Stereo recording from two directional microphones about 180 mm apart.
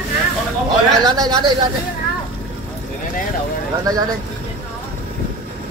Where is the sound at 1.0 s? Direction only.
25° right (ahead or behind).